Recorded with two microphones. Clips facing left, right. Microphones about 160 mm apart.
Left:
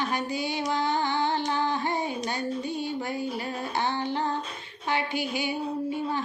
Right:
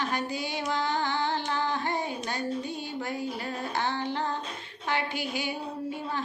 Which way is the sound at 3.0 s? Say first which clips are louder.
Left 2 dB; centre (ahead or behind).